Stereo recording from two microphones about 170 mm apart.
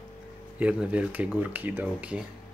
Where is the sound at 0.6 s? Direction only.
10° right (ahead or behind).